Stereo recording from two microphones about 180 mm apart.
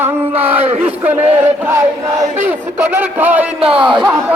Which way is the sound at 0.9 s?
10° right (ahead or behind).